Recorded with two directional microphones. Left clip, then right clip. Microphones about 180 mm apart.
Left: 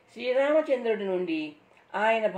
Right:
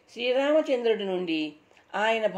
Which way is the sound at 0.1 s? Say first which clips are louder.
Even; 35° right (ahead or behind).